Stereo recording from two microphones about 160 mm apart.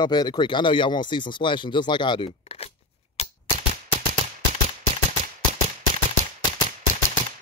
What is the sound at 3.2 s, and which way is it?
Typewriter, 40° left (ahead or behind).